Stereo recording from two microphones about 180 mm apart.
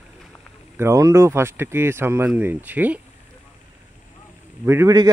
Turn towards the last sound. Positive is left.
turn(degrees=-20)  # may be behind; listen again after turning